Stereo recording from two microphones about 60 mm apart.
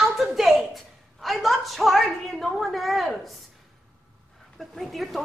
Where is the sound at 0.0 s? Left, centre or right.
Centre.